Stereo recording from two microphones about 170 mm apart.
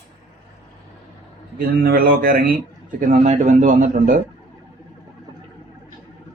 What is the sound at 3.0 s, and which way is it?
Speech, 45° right (ahead or behind).